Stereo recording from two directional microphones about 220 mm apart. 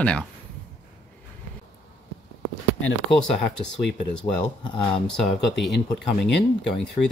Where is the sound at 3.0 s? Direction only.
Centre (ahead or behind).